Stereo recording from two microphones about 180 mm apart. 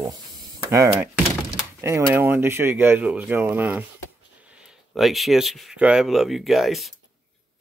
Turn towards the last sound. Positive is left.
turn(degrees=0)  # may be behind; listen again after turning